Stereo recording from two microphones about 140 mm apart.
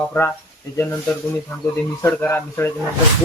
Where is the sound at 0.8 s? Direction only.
20° left (ahead or behind).